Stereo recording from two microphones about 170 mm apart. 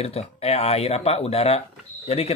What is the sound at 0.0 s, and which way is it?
Speech, 35° left (ahead or behind).